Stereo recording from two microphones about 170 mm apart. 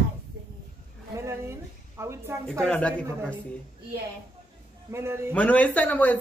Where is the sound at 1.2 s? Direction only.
15° right (ahead or behind).